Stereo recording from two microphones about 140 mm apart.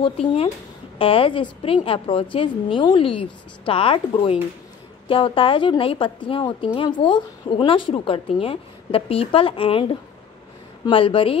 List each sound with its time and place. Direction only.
0.0 s a woman's voice: 45° left (ahead or behind)